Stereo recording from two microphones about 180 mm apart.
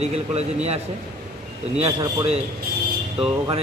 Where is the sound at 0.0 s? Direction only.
35° right (ahead or behind).